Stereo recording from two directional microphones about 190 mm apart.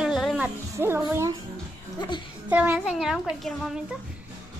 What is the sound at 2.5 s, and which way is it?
A woman's voice, 10° right (ahead or behind).